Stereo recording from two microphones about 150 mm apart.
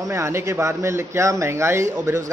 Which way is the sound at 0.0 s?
20° right (ahead or behind).